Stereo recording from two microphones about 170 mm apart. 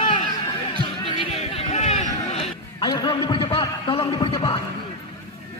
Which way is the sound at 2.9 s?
25° left (ahead or behind).